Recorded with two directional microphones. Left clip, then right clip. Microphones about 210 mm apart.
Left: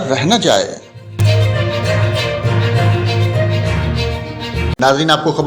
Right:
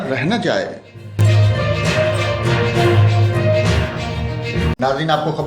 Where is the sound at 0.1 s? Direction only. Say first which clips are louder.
Left 6 dB; 20° left (ahead or behind).